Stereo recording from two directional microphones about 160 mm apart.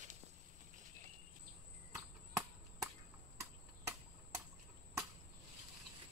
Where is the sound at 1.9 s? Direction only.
20° right (ahead or behind).